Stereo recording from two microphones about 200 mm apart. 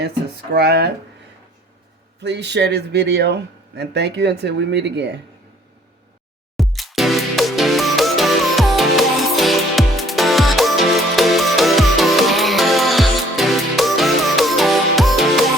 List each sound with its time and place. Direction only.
0.5 s speech: 55° right (ahead or behind)
2.2 s speech: 60° right (ahead or behind)
6.6 s music: centre (ahead or behind)